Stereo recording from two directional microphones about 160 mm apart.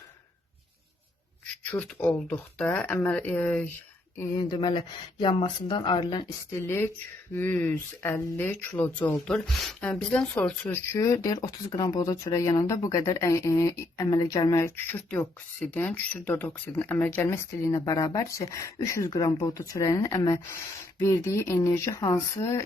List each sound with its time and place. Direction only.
1.7 s speech: 10° left (ahead or behind)
4.2 s speech: 25° left (ahead or behind)
6.5 s speech: 15° left (ahead or behind)